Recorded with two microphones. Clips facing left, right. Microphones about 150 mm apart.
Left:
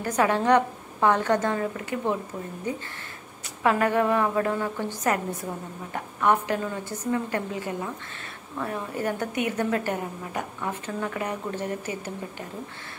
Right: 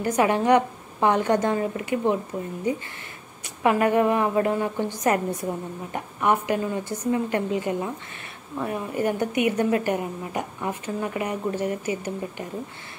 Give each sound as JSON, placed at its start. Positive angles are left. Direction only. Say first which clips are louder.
{"t": 0.0, "sound": "a woman's voice", "louder": "right 2 dB", "side_deg": -15}